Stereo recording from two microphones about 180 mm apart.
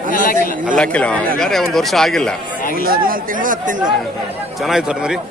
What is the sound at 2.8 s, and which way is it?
Speech, 55° right (ahead or behind).